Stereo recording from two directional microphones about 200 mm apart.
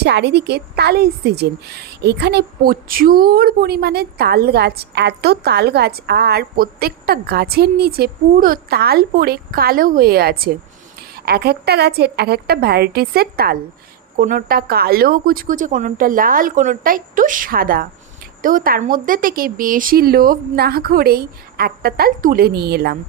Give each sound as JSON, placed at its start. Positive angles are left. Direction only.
{"t": 0.0, "sound": "a woman's voice", "side_deg": -55}